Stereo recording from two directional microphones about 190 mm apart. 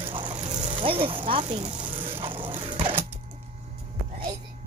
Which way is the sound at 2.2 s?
25° right (ahead or behind).